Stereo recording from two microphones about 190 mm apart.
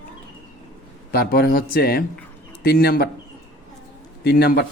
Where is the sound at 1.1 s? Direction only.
50° left (ahead or behind).